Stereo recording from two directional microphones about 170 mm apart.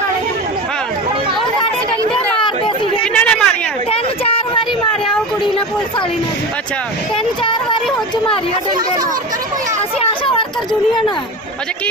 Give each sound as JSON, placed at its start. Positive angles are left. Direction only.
{"t": 2.3, "sound": "chatter", "side_deg": 30}
{"t": 3.0, "sound": "chatter", "side_deg": 10}
{"t": 3.9, "sound": "a sound", "side_deg": 30}